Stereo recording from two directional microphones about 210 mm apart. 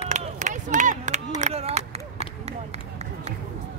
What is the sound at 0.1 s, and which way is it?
Run, 35° right (ahead or behind).